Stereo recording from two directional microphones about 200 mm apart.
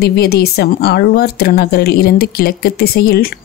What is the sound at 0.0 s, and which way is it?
Speech, 50° left (ahead or behind).